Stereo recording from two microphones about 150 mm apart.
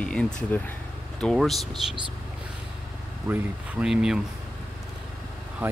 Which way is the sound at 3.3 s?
15° right (ahead or behind).